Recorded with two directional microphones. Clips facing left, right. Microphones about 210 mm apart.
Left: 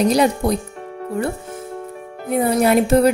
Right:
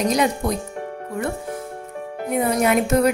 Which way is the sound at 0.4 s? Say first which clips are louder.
Left 4 dB; 35° left (ahead or behind).